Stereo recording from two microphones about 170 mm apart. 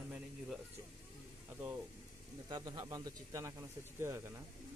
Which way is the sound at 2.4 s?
25° right (ahead or behind).